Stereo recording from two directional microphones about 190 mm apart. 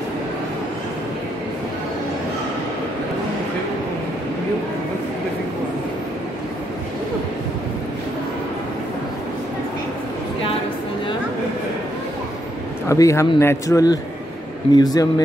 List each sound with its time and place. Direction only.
12.8 s a man's voice: 15° left (ahead or behind)